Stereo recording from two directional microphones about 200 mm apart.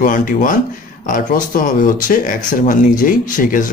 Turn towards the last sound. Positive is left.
turn(degrees=40)  # may be behind; listen again after turning